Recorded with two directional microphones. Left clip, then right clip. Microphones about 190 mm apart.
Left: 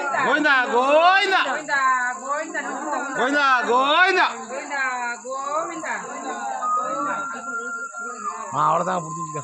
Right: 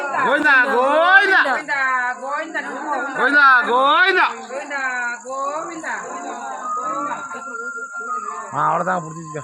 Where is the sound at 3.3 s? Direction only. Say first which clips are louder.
Right 6 dB; 15° left (ahead or behind); by 5.1 s 5° right (ahead or behind).